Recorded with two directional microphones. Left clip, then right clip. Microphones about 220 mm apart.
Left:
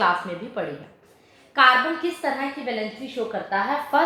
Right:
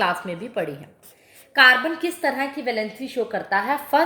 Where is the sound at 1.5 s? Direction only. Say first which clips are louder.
Right 2 dB; 45° right (ahead or behind).